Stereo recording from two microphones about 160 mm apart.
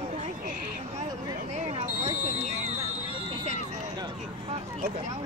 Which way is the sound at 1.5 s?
40° right (ahead or behind).